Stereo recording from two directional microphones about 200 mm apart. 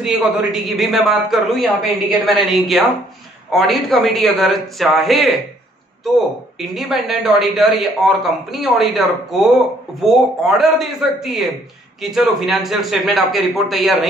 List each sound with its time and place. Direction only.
0.0 s speech: centre (ahead or behind)